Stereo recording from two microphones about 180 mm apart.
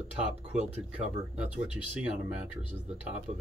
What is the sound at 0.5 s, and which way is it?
Speech, 35° right (ahead or behind).